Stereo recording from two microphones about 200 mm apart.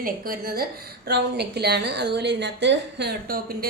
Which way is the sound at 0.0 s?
45° right (ahead or behind).